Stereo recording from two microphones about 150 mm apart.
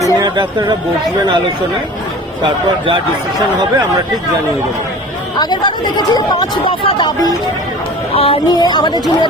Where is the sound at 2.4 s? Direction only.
30° right (ahead or behind).